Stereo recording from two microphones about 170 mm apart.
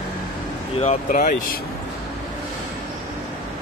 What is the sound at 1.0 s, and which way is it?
Speech, 50° left (ahead or behind).